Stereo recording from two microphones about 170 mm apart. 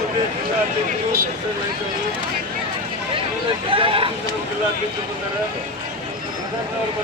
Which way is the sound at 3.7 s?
30° right (ahead or behind).